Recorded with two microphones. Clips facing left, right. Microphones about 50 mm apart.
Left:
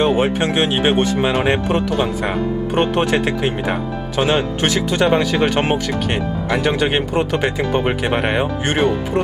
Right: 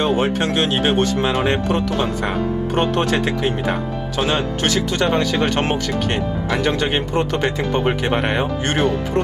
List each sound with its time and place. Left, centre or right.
0.0 s speech: centre